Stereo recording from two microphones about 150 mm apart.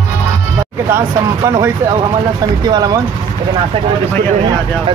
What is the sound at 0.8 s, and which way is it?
Speech, 20° right (ahead or behind).